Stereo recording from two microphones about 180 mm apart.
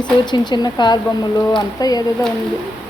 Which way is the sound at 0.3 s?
25° left (ahead or behind).